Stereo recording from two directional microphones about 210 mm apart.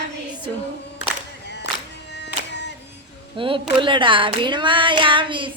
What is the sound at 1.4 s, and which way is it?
Music, 55° left (ahead or behind).